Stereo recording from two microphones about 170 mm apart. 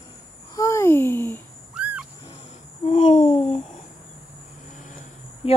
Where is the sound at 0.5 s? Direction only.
20° left (ahead or behind).